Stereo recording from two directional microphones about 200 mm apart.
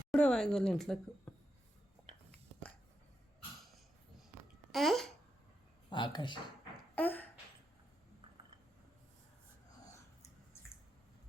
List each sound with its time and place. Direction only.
0.1 s speech: 5° left (ahead or behind)
4.7 s speech: centre (ahead or behind)
5.9 s speech: 25° left (ahead or behind)
6.9 s a sound: 10° left (ahead or behind)